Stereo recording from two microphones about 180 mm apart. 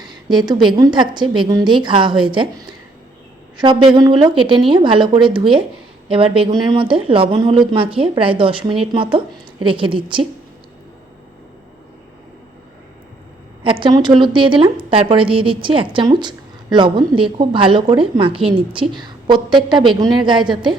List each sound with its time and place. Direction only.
0.0 s a woman's voice: 25° right (ahead or behind)
3.6 s a woman's voice: 25° right (ahead or behind)
13.7 s a woman's voice: 25° right (ahead or behind)